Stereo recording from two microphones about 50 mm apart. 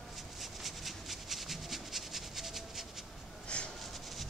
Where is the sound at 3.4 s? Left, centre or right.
Left.